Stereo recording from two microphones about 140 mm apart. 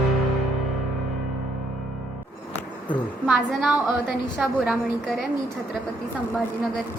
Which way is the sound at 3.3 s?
5° right (ahead or behind).